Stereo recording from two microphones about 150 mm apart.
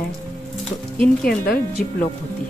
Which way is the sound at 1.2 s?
90° left.